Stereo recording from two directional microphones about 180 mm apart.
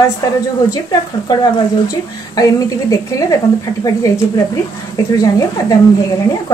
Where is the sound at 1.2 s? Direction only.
20° left (ahead or behind).